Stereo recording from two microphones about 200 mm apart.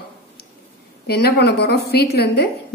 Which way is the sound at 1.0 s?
55° left (ahead or behind).